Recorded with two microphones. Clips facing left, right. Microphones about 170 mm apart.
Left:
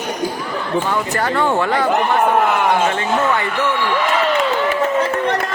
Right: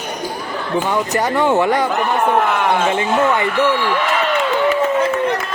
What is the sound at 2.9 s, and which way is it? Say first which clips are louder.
Speech: right 2 dB; 20° right (ahead or behind).